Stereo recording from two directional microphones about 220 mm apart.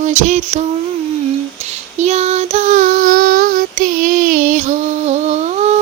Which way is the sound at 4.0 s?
35° right (ahead or behind).